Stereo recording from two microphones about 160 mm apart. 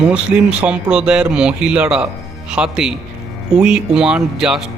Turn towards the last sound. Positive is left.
turn(degrees=-5)  # may be behind; listen again after turning